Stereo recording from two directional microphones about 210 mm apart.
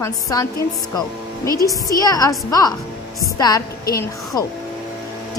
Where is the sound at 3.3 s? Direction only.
15° left (ahead or behind).